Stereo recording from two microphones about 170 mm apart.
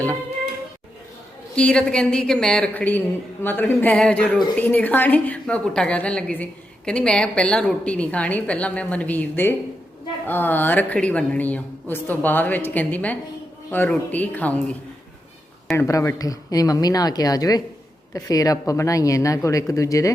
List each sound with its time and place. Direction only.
1.5 s a woman's voice: 5° left (ahead or behind)
15.7 s speech: 15° left (ahead or behind)